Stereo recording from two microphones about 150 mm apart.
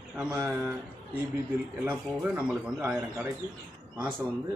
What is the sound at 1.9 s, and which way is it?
Speech, 10° right (ahead or behind).